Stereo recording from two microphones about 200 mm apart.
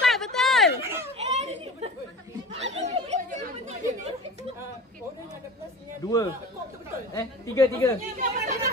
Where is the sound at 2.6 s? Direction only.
35° right (ahead or behind).